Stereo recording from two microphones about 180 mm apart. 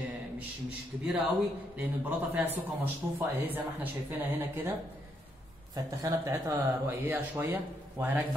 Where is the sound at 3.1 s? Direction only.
10° right (ahead or behind).